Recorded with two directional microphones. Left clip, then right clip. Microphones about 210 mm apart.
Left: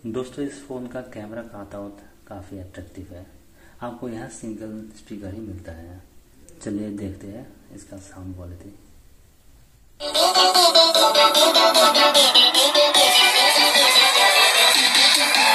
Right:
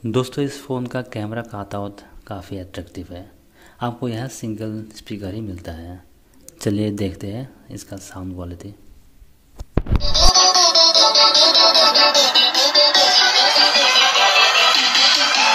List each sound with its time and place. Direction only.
0.1 s speech: 50° right (ahead or behind)
3.8 s speech: 45° right (ahead or behind)
10.2 s music: 10° left (ahead or behind)